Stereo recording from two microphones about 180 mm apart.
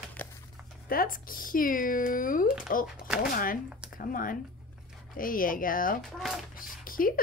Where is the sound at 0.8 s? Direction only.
50° left (ahead or behind).